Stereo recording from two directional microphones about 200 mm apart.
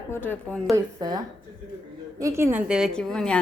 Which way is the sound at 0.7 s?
20° right (ahead or behind).